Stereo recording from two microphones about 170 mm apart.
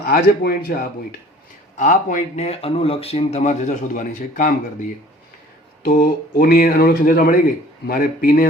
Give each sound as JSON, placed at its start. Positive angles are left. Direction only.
{"t": 0.0, "sound": "speech", "side_deg": 60}
{"t": 1.7, "sound": "speech", "side_deg": 45}
{"t": 5.8, "sound": "speech", "side_deg": 60}